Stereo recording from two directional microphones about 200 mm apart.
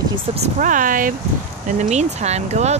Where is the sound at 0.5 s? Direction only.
40° right (ahead or behind).